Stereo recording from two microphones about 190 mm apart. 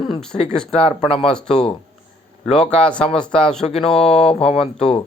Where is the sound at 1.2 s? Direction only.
5° left (ahead or behind).